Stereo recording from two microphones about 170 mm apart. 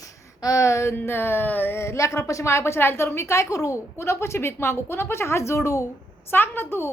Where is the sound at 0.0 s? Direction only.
20° left (ahead or behind).